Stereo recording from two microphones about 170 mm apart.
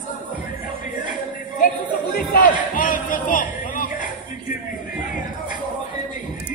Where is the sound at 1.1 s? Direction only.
55° left (ahead or behind).